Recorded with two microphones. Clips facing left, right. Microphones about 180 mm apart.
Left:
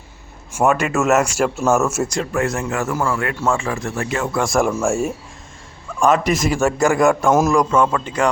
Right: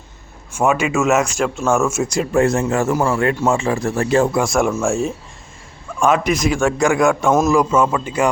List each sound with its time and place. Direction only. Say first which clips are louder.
0.5 s speech: even; centre (ahead or behind)
2.3 s a man's voice: right 9 dB; 30° right (ahead or behind)
4.4 s a man's voice: right 1 dB; centre (ahead or behind)